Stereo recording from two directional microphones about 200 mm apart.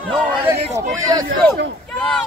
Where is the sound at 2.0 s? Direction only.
5° left (ahead or behind).